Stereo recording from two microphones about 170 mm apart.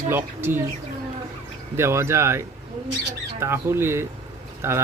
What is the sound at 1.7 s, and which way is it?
Speech, 15° right (ahead or behind).